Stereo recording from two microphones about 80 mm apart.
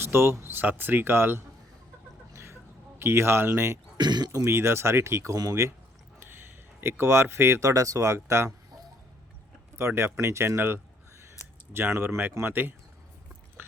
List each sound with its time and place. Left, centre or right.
0.0 s speech: right
2.3 s chicken: right
3.0 s speech: right
3.9 s speech: right
4.4 s speech: right
6.8 s speech: right
9.7 s speech: right